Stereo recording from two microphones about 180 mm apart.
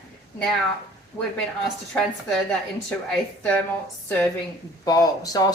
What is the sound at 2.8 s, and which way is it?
Speech, 5° left (ahead or behind).